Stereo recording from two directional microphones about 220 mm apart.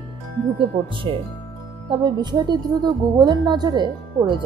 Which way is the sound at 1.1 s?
25° right (ahead or behind).